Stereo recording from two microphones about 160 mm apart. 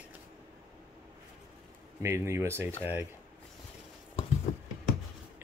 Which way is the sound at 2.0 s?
15° right (ahead or behind).